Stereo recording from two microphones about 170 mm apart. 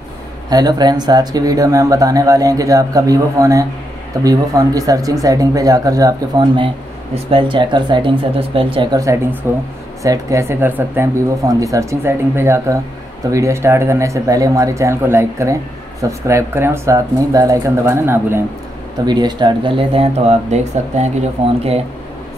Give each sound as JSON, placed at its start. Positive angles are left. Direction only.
{"t": 0.5, "sound": "speech", "side_deg": -25}
{"t": 9.0, "sound": "speech", "side_deg": -15}
{"t": 19.0, "sound": "speech", "side_deg": -25}